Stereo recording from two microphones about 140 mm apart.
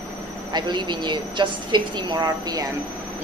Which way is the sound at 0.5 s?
30° right (ahead or behind).